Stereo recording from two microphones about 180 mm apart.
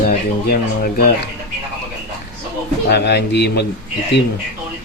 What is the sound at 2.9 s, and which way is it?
Speech, 70° left (ahead or behind).